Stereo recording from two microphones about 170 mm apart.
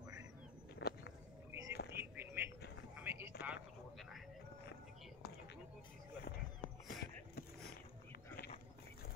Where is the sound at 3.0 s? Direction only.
15° right (ahead or behind).